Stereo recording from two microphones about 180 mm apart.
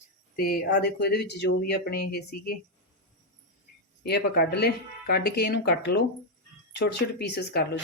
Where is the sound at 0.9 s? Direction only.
65° left (ahead or behind).